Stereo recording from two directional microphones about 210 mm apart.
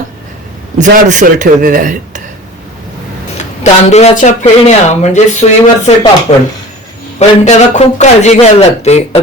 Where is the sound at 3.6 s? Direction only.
30° left (ahead or behind).